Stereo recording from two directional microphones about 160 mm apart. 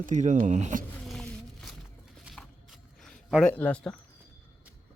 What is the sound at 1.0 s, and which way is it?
Patter, 5° left (ahead or behind).